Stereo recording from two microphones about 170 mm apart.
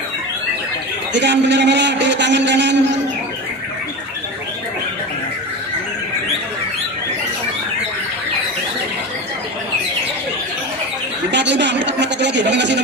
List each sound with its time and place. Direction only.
1.1 s a man's voice: 90° right
11.3 s a man's voice: 90° right